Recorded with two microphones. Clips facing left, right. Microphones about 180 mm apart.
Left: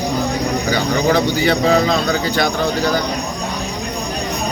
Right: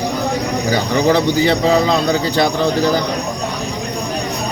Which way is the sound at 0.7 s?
30° right (ahead or behind).